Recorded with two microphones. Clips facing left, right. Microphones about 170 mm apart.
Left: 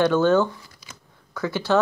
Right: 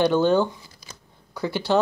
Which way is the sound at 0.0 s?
15° right (ahead or behind).